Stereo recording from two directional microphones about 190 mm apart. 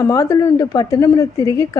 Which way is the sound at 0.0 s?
15° left (ahead or behind).